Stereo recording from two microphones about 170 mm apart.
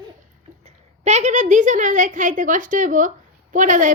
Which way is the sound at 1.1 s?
45° right (ahead or behind).